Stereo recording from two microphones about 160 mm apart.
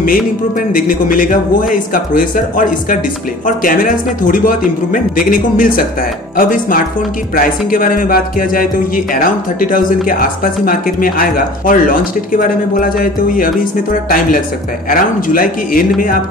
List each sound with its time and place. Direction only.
0.7 s speech: 60° left (ahead or behind)
14.9 s speech: 60° left (ahead or behind)